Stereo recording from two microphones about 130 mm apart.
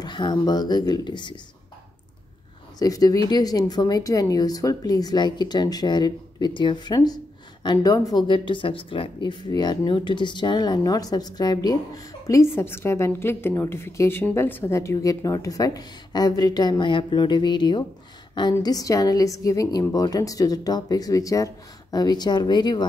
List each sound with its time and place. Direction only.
0.0 s speech: 35° left (ahead or behind)
2.8 s a woman's voice: 30° left (ahead or behind)